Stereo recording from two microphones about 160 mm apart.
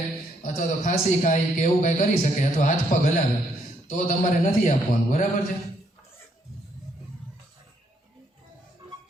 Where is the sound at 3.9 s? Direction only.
55° left (ahead or behind).